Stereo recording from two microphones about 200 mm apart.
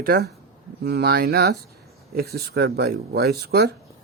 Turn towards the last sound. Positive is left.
turn(degrees=-55)  # may be behind; listen again after turning